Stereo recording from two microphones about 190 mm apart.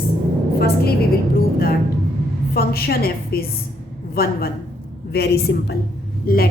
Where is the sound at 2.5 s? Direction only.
55° left (ahead or behind).